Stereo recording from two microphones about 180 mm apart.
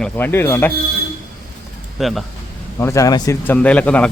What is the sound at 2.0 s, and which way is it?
Speech, centre (ahead or behind).